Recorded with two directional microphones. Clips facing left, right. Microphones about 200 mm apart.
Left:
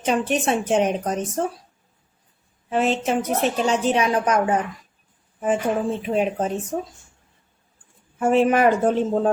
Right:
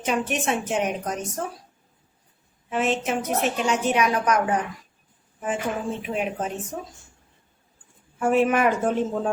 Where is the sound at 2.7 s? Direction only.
35° left (ahead or behind).